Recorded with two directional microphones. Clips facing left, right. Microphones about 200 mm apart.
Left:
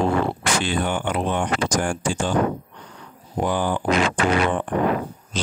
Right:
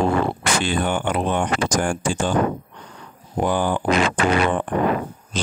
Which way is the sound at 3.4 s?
55° right (ahead or behind).